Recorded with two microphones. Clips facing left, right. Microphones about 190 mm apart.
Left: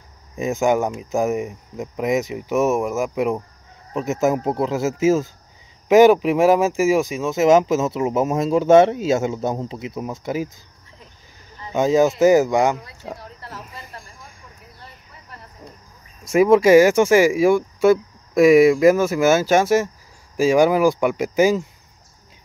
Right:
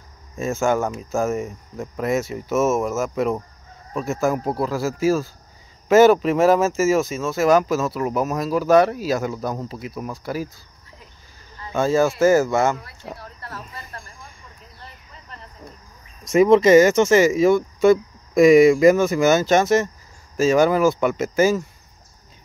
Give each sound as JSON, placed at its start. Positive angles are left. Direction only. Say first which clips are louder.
{"t": 0.4, "sound": "speech", "louder": "left 2 dB", "side_deg": 15}
{"t": 11.6, "sound": "speech", "louder": "left 2 dB", "side_deg": 15}
{"t": 16.3, "sound": "speech", "louder": "even", "side_deg": 10}